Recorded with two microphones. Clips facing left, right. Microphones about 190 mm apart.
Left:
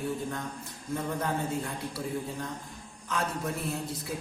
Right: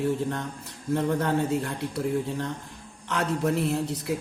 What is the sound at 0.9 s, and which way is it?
A man's voice, 70° right (ahead or behind).